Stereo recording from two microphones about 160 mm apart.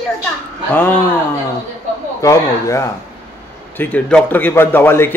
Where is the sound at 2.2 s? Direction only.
20° left (ahead or behind).